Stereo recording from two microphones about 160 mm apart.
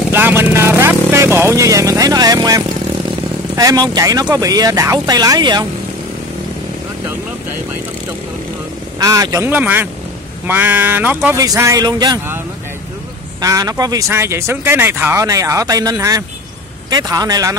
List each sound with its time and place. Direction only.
0.1 s vehicle: 15° right (ahead or behind)
3.5 s speech: 25° right (ahead or behind)
9.0 s speech: 20° right (ahead or behind)
11.3 s speech: 20° right (ahead or behind)
13.4 s speech: 20° right (ahead or behind)